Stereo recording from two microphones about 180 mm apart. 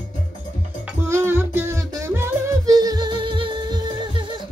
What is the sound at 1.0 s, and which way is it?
Singing, 15° right (ahead or behind).